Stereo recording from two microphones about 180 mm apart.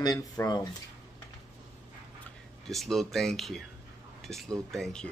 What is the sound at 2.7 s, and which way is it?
Speech, centre (ahead or behind).